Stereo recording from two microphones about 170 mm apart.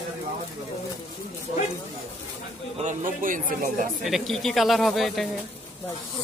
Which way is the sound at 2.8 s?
50° right (ahead or behind).